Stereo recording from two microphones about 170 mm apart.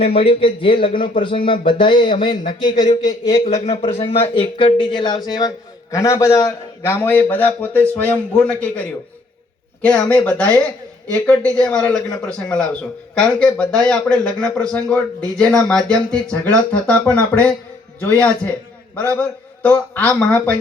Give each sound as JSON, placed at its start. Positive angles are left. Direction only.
{"t": 0.0, "sound": "a man's voice", "side_deg": 35}
{"t": 3.7, "sound": "a man's voice", "side_deg": 35}